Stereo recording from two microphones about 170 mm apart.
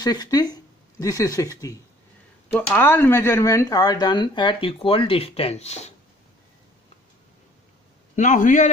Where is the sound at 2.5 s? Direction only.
10° left (ahead or behind); by 5.9 s 40° left (ahead or behind).